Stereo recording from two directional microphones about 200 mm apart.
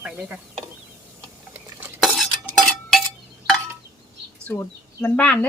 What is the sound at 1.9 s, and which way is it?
Stir, centre (ahead or behind).